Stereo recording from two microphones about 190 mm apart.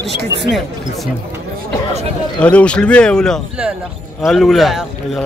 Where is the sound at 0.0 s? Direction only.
65° left (ahead or behind).